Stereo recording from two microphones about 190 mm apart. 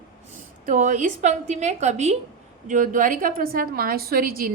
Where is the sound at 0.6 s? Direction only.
40° right (ahead or behind).